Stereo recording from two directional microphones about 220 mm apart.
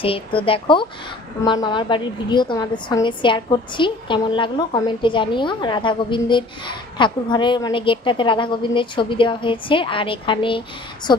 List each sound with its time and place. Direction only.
0.0 s a woman's voice: 25° left (ahead or behind)